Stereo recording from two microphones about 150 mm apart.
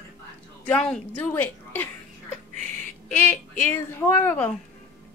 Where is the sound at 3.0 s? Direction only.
10° left (ahead or behind).